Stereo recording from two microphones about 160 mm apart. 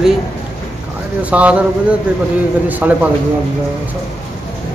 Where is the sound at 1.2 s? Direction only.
10° right (ahead or behind).